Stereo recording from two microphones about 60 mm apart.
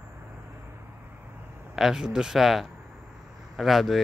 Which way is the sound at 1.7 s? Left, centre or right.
Centre.